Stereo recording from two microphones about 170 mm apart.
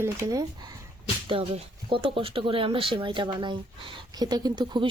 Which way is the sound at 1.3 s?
30° right (ahead or behind).